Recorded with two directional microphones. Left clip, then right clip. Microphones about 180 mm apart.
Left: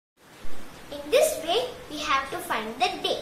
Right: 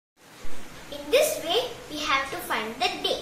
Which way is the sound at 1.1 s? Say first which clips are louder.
Even; 20° left (ahead or behind).